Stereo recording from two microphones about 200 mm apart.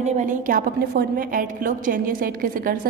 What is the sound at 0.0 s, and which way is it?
A woman's voice, 40° right (ahead or behind).